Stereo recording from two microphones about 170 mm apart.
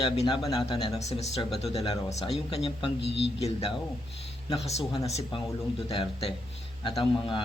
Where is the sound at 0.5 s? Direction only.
30° left (ahead or behind).